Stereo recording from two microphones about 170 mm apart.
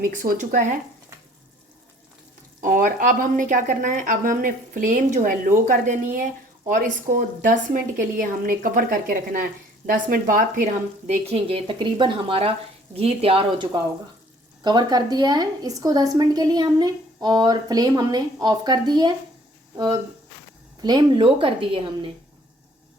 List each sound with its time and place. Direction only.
0.0 s a woman's voice: 55° right (ahead or behind)
2.6 s a woman's voice: 55° right (ahead or behind); by 22.1 s 30° right (ahead or behind)